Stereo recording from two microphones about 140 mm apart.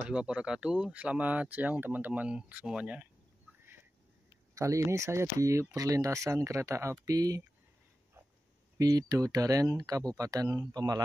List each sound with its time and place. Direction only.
0.1 s speech: 5° right (ahead or behind)
4.6 s speech: 20° right (ahead or behind)
8.7 s speech: 25° right (ahead or behind)